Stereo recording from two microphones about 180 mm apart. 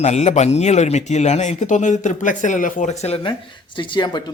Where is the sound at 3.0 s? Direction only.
35° left (ahead or behind).